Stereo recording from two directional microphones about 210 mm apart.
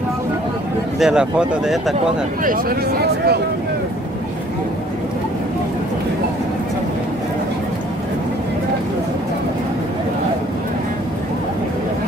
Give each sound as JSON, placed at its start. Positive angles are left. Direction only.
{"t": 0.9, "sound": "speech", "side_deg": -5}
{"t": 2.4, "sound": "speech", "side_deg": -45}